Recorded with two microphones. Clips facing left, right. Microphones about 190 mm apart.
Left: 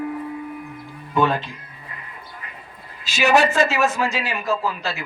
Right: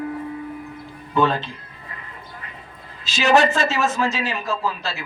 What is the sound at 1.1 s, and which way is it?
Speech, 15° left (ahead or behind).